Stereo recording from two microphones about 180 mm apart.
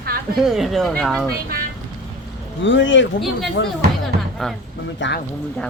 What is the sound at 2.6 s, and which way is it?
Speech, 90° left.